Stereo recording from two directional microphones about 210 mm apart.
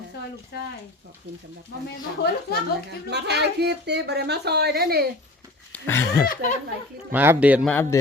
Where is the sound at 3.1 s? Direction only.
50° right (ahead or behind).